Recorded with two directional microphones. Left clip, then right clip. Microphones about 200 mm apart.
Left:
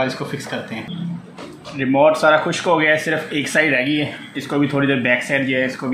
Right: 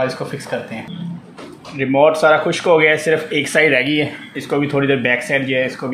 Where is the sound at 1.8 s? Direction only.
25° right (ahead or behind).